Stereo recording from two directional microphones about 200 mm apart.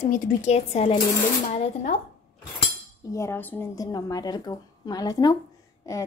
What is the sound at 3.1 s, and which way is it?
A woman's voice, 10° left (ahead or behind).